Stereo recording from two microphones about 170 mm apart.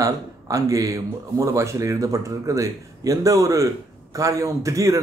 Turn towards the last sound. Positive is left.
turn(degrees=-20)  # may be behind; listen again after turning